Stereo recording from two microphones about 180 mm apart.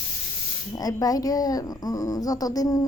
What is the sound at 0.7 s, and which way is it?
Speech, 20° left (ahead or behind).